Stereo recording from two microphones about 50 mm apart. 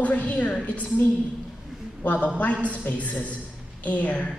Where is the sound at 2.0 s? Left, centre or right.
Left.